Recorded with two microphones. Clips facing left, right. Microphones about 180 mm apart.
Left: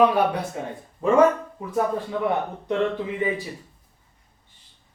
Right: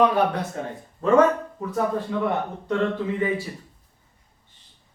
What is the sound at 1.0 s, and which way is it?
Speech, 10° left (ahead or behind).